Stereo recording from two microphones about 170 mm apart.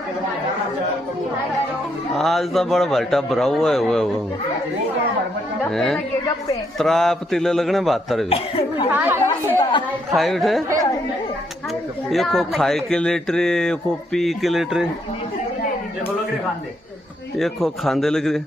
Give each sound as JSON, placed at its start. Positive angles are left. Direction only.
{"t": 2.1, "sound": "speech", "side_deg": 0}
{"t": 5.7, "sound": "speech", "side_deg": 0}
{"t": 8.3, "sound": "speech", "side_deg": 35}
{"t": 8.9, "sound": "speech", "side_deg": -10}
{"t": 9.6, "sound": "speech", "side_deg": 25}
{"t": 10.1, "sound": "speech", "side_deg": 0}
{"t": 12.1, "sound": "speech", "side_deg": 0}
{"t": 17.4, "sound": "speech", "side_deg": 0}